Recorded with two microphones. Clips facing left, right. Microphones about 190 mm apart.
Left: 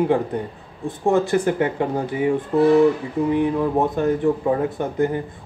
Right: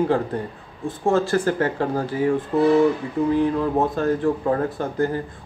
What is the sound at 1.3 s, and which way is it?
Speech, 15° left (ahead or behind).